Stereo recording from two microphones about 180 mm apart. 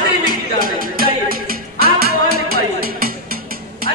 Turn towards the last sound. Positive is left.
turn(degrees=-55)  # may be behind; listen again after turning